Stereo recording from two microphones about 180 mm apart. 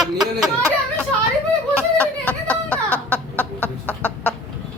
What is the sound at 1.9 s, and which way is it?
Chicken, 10° left (ahead or behind).